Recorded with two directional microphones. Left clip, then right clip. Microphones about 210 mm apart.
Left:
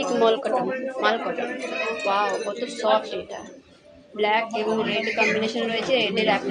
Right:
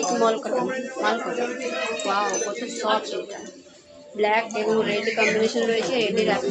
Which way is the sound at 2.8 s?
5° left (ahead or behind).